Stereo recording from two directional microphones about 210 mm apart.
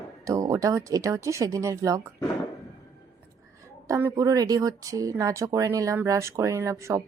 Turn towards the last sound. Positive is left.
turn(degrees=-15)  # may be behind; listen again after turning